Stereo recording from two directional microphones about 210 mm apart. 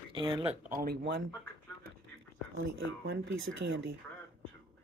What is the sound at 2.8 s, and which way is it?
Speech, 60° right (ahead or behind).